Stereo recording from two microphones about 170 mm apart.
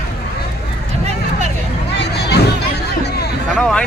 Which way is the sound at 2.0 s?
75° left (ahead or behind).